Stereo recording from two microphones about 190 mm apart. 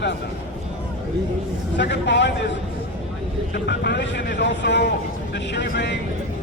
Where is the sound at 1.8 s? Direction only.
65° left (ahead or behind).